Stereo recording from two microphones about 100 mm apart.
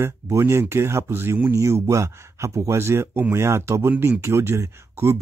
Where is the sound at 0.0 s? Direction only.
25° right (ahead or behind).